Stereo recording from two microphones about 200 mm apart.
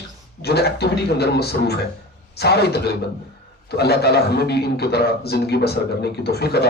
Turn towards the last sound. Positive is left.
turn(degrees=55)  # may be behind; listen again after turning